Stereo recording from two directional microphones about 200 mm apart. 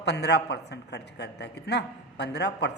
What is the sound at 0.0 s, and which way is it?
A man's voice, 60° left (ahead or behind).